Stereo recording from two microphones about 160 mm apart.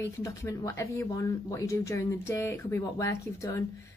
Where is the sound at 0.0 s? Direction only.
20° left (ahead or behind).